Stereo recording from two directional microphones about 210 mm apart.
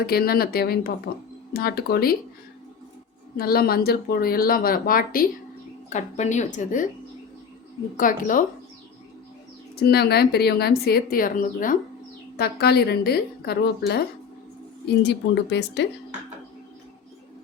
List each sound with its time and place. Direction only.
0.0 s a woman's voice: 45° left (ahead or behind)
3.3 s a woman's voice: 45° left (ahead or behind)
7.9 s speech: 40° left (ahead or behind)
9.7 s a woman's voice: 50° left (ahead or behind)